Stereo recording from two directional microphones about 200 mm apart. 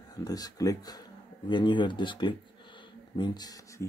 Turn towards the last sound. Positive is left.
turn(degrees=20)  # may be behind; listen again after turning